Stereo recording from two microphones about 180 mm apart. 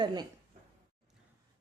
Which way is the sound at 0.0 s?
25° right (ahead or behind).